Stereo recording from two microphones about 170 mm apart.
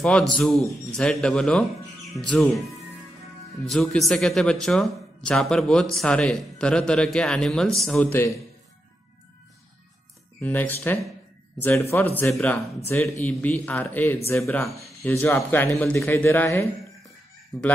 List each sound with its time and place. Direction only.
0.0 s speech: 5° left (ahead or behind)
3.6 s speech: centre (ahead or behind)
10.4 s speech: 10° left (ahead or behind)